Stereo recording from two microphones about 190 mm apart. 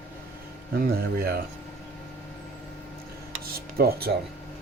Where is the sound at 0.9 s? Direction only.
55° right (ahead or behind).